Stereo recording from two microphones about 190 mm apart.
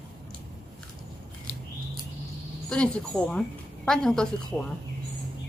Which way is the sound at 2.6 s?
5° left (ahead or behind).